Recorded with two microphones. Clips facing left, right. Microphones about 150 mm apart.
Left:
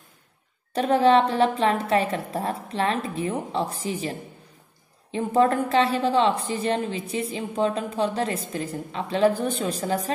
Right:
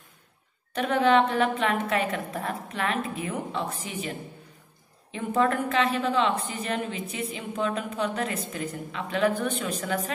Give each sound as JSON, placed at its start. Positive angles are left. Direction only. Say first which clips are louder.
{"t": 0.7, "sound": "a woman's voice", "louder": "left 3 dB", "side_deg": 35}
{"t": 5.1, "sound": "a woman's voice", "louder": "left 4 dB", "side_deg": 35}